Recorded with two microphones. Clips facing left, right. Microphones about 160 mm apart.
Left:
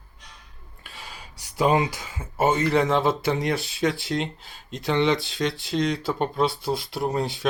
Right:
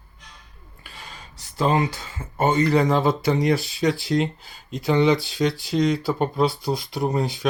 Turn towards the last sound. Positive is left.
turn(degrees=0)  # may be behind; listen again after turning